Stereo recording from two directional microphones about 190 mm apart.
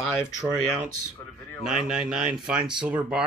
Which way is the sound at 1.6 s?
5° right (ahead or behind).